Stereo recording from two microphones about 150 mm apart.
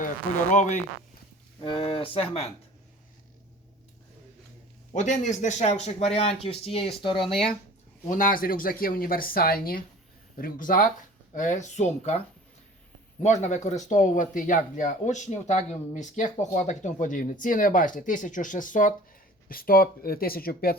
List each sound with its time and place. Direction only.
0.5 s speech: 55° left (ahead or behind)
1.6 s speech: 35° left (ahead or behind)
4.9 s speech: 55° left (ahead or behind); by 7.4 s 35° left (ahead or behind)
8.1 s speech: 65° left (ahead or behind); by 9.8 s 85° left
10.3 s speech: 65° left (ahead or behind); by 12.2 s 50° left (ahead or behind)
13.2 s speech: 50° left (ahead or behind)
19.5 s speech: 75° left (ahead or behind)